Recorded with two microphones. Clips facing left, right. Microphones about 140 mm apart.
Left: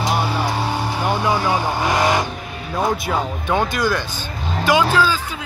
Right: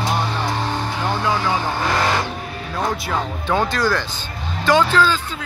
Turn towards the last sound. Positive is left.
turn(degrees=10)  # may be behind; listen again after turning